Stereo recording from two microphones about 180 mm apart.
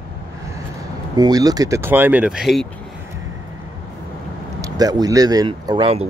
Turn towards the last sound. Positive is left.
turn(degrees=-30)  # may be behind; listen again after turning